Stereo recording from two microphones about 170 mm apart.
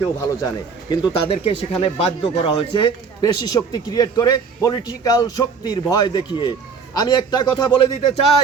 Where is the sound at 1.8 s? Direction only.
35° left (ahead or behind).